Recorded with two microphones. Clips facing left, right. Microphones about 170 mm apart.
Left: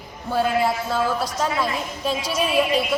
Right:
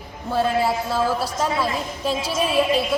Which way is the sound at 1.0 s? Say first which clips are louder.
Right 1 dB; 30° right (ahead or behind).